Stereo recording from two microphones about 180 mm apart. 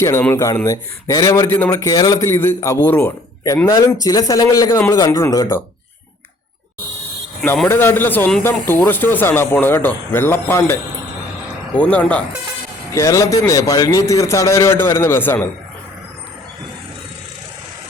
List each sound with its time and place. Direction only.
0.0 s a man's voice: 10° left (ahead or behind)
7.4 s a man's voice: 10° left (ahead or behind)
12.9 s a man's voice: 15° left (ahead or behind)